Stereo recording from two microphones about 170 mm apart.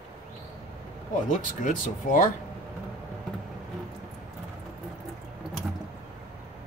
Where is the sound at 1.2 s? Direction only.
50° left (ahead or behind).